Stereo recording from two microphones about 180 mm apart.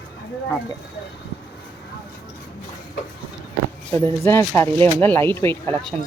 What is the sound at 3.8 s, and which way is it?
Speech, 15° left (ahead or behind).